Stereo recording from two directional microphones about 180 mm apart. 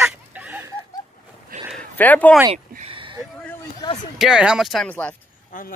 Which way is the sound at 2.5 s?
30° right (ahead or behind).